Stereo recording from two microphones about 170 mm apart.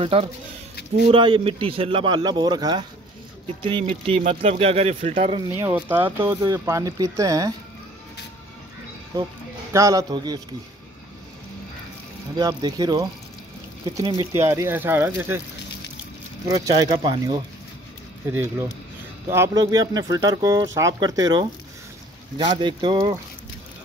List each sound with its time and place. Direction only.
0.0 s speech: 35° right (ahead or behind)
5.5 s speech: 15° right (ahead or behind)
9.7 s speech: 20° right (ahead or behind)
12.4 s speech: 25° right (ahead or behind)
14.3 s speech: 15° right (ahead or behind)
16.4 s speech: 20° right (ahead or behind)
18.3 s speech: 15° right (ahead or behind); by 23.1 s 30° right (ahead or behind)